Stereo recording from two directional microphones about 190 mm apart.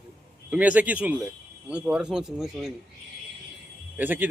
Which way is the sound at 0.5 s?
5° right (ahead or behind).